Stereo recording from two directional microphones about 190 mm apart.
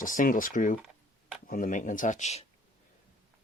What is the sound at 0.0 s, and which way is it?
Speech, 45° left (ahead or behind).